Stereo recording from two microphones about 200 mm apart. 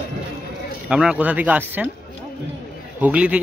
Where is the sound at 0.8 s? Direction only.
5° right (ahead or behind).